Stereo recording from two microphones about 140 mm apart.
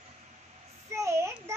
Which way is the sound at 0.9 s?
20° right (ahead or behind).